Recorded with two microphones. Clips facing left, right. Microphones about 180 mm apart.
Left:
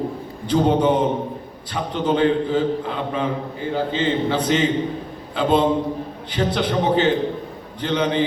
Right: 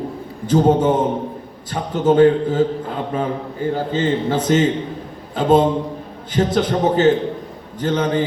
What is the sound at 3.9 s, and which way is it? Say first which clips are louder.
A man's voice: right 2 dB; 45° right (ahead or behind).